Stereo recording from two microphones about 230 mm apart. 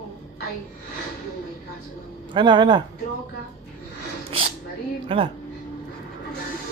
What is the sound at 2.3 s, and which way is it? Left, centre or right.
Speech, centre.